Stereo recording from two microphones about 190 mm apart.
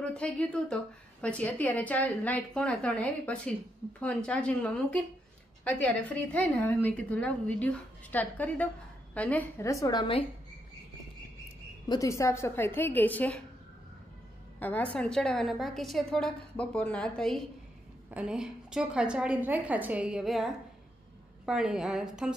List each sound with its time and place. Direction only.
0.1 s a woman's voice: 5° left (ahead or behind); by 10.2 s 25° left (ahead or behind)
11.9 s a woman's voice: 15° left (ahead or behind)
14.6 s a woman's voice: 10° left (ahead or behind)